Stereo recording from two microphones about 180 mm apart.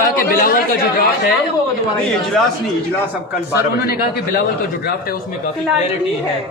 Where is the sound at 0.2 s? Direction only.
50° left (ahead or behind).